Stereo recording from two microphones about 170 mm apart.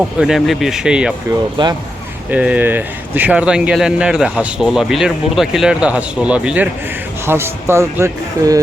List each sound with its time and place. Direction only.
0.2 s speech: centre (ahead or behind)
1.6 s speech: 30° right (ahead or behind)
2.3 s speech: 10° right (ahead or behind)